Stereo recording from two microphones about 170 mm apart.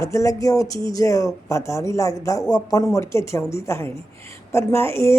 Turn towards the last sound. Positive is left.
turn(degrees=15)  # may be behind; listen again after turning